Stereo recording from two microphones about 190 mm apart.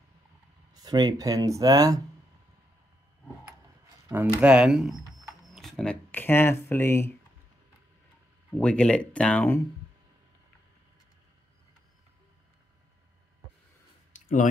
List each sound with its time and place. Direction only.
0.7 s speech: 20° right (ahead or behind)
4.4 s speech: 5° right (ahead or behind); by 7.1 s 10° left (ahead or behind)
8.5 s speech: 5° left (ahead or behind)
14.1 s a sound: 40° left (ahead or behind)